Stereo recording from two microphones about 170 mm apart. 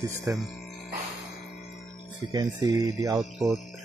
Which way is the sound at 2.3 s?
25° right (ahead or behind).